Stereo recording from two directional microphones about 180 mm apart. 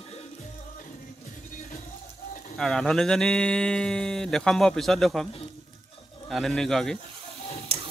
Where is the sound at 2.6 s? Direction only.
5° left (ahead or behind).